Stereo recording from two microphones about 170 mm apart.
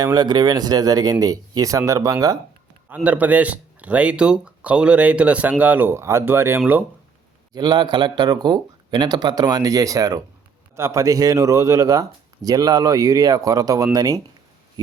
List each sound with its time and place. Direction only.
0.0 s speech: 25° right (ahead or behind)
2.9 s speech: 10° right (ahead or behind)
7.5 s speech: 25° right (ahead or behind)